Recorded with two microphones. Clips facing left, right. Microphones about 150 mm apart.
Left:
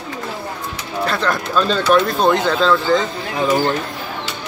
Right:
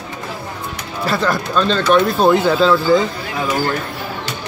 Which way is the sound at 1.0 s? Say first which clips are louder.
Right 1 dB; 5° right (ahead or behind).